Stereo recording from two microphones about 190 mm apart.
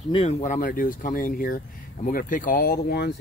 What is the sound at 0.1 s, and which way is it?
Speech, 35° left (ahead or behind).